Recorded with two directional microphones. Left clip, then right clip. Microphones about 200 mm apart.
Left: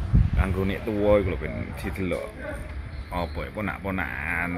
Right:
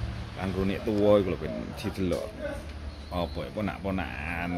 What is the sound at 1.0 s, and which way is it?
Speech, 20° right (ahead or behind).